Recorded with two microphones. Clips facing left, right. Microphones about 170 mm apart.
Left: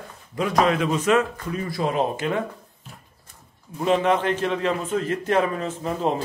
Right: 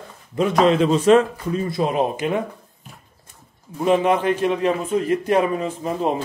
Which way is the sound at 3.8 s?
15° right (ahead or behind).